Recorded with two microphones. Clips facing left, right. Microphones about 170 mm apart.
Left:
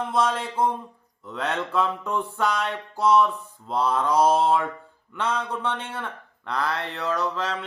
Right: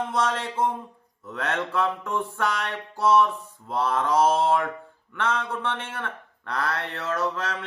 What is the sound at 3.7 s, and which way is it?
Speech, 15° left (ahead or behind).